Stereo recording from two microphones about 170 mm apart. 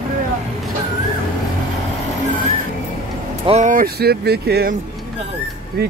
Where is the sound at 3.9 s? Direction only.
70° right (ahead or behind).